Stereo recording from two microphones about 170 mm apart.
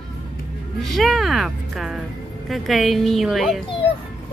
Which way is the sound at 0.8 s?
Centre (ahead or behind).